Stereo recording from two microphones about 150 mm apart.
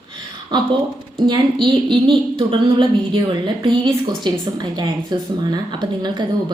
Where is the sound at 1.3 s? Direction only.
30° right (ahead or behind).